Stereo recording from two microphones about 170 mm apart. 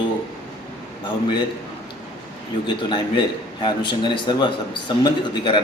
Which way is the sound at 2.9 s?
30° left (ahead or behind).